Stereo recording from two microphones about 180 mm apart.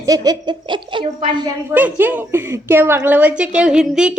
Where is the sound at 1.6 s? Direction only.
10° right (ahead or behind).